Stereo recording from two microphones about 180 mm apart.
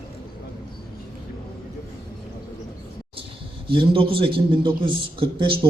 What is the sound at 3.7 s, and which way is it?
A man's voice, 30° right (ahead or behind).